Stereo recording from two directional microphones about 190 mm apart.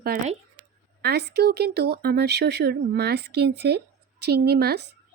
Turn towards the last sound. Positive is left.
turn(degrees=-55)  # may be behind; listen again after turning